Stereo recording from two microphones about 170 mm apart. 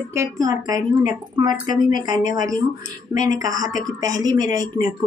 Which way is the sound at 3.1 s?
20° right (ahead or behind).